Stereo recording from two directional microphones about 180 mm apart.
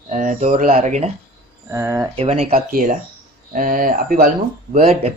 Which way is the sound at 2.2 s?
35° right (ahead or behind).